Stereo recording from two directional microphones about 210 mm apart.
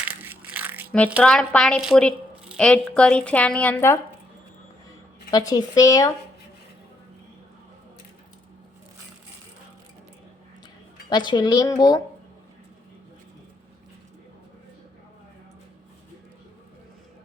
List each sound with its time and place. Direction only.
0.0 s crushing: 10° right (ahead or behind)
1.2 s speech: 5° left (ahead or behind)
5.3 s speech: 15° left (ahead or behind)
11.1 s speech: 20° left (ahead or behind)